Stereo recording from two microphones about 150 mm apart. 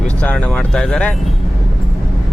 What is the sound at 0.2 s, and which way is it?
Speech, 10° left (ahead or behind).